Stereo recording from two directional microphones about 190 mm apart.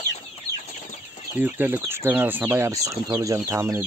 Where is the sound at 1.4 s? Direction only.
10° right (ahead or behind).